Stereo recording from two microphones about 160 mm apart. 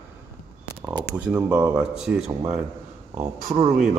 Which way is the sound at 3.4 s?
45° right (ahead or behind).